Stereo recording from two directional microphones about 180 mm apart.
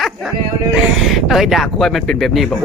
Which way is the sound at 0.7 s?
Centre (ahead or behind).